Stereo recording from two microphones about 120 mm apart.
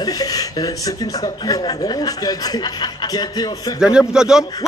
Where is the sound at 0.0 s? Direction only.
30° left (ahead or behind).